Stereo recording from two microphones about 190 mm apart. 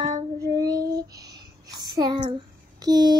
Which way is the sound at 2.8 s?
20° right (ahead or behind).